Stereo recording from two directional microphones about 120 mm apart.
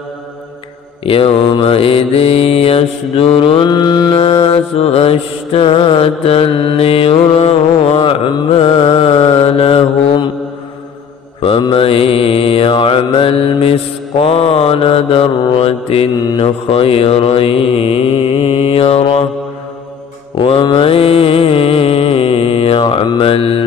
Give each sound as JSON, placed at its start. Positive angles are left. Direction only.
{"t": 1.0, "sound": "mantra", "side_deg": 50}
{"t": 3.6, "sound": "mantra", "side_deg": 35}
{"t": 4.2, "sound": "mantra", "side_deg": 50}
{"t": 11.4, "sound": "mantra", "side_deg": 45}
{"t": 20.3, "sound": "mantra", "side_deg": 45}